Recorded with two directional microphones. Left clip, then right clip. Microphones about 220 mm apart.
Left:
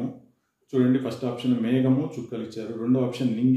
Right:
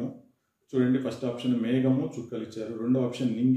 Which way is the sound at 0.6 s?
5° left (ahead or behind).